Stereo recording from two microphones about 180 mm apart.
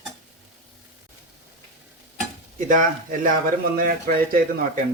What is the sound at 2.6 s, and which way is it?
Speech, 45° right (ahead or behind).